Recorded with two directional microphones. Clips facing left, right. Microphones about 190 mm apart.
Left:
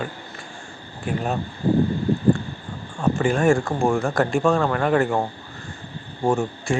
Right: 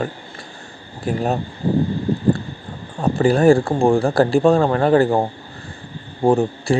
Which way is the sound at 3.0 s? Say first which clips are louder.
Right 5 dB; 35° right (ahead or behind).